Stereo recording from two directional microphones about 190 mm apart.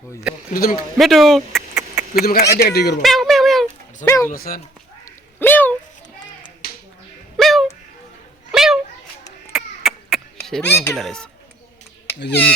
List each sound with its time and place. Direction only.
0.5 s speech: 50° left (ahead or behind)
0.9 s speech: centre (ahead or behind)
1.7 s a sound: 10° right (ahead or behind)
2.2 s speech: 55° left (ahead or behind)
3.0 s a sound: centre (ahead or behind)
4.0 s speech: 15° left (ahead or behind)
4.3 s speech: 50° left (ahead or behind)
5.0 s a sound: 10° left (ahead or behind)
6.6 s finger snapping: 55° left (ahead or behind)
7.3 s a sound: centre (ahead or behind)
10.9 s speech: centre (ahead or behind)
12.3 s speech: 10° left (ahead or behind)